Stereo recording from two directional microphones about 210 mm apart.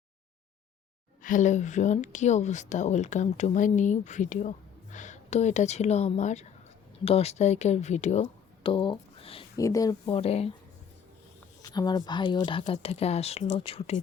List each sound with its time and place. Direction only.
1.2 s speech: 40° left (ahead or behind); by 10.2 s 15° left (ahead or behind)
10.2 s speech: 30° left (ahead or behind)
11.6 s speech: 20° left (ahead or behind)